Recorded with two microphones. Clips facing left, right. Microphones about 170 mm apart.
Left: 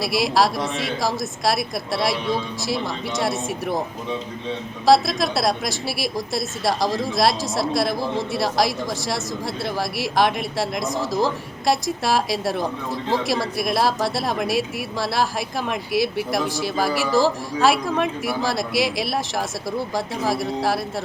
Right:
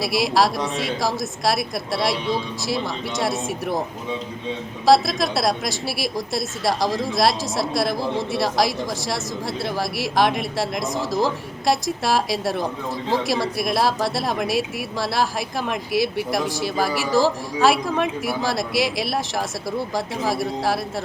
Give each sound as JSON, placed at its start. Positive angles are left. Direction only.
{"t": 0.0, "sound": "speech", "side_deg": 0}
{"t": 4.9, "sound": "speech", "side_deg": 0}